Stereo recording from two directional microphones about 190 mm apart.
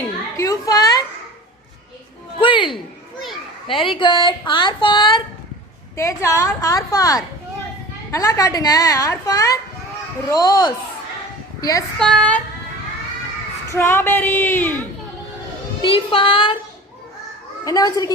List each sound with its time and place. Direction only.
0.3 s children playing: 15° left (ahead or behind)
2.4 s speech: 25° left (ahead or behind)
3.7 s a woman's voice: 25° left (ahead or behind)
11.9 s child singing: 5° left (ahead or behind)
13.7 s a woman's voice: 10° left (ahead or behind)
15.8 s speech: 30° left (ahead or behind)
17.7 s speech: 20° left (ahead or behind)